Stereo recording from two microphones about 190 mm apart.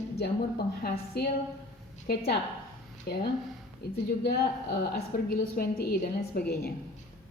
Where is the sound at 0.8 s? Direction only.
55° left (ahead or behind).